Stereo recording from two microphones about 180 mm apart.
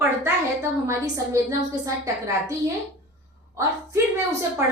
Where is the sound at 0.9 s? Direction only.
15° right (ahead or behind).